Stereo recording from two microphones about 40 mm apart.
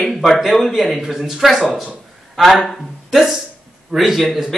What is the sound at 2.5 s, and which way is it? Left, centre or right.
Speech, centre.